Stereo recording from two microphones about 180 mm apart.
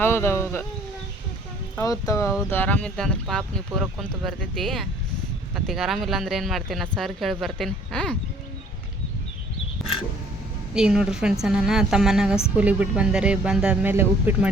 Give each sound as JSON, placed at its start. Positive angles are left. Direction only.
{"t": 0.0, "sound": "speech", "side_deg": 15}
{"t": 1.7, "sound": "speech", "side_deg": 20}
{"t": 10.8, "sound": "speech", "side_deg": -5}